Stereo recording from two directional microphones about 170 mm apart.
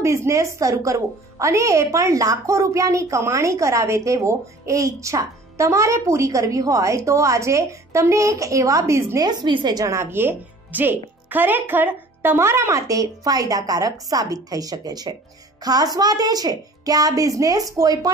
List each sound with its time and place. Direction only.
0.0 s a woman's voice: 15° right (ahead or behind)